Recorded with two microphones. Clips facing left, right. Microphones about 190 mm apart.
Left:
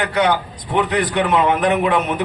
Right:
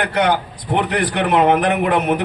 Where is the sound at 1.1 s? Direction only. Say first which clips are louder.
Right 4 dB; 60° right (ahead or behind).